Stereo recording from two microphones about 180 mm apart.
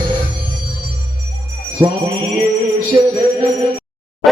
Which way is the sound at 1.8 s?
35° right (ahead or behind).